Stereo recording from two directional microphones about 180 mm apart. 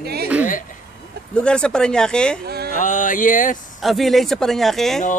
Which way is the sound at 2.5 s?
60° right (ahead or behind).